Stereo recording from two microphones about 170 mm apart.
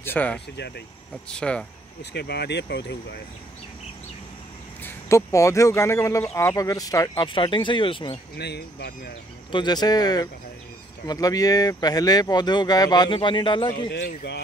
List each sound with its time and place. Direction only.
0.0 s speech: 10° left (ahead or behind)
2.1 s speech: 75° left (ahead or behind)
4.8 s speech: 15° left (ahead or behind)
8.4 s speech: 75° left (ahead or behind)
9.5 s speech: 25° left (ahead or behind)
13.8 s speech: 85° left